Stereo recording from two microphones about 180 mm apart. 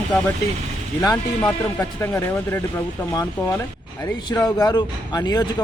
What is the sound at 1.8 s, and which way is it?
Speech, 15° left (ahead or behind).